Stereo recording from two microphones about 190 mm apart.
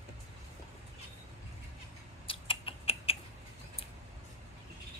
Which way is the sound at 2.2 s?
30° left (ahead or behind).